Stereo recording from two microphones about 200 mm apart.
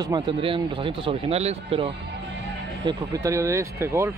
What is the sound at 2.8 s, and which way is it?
Speech, 20° right (ahead or behind).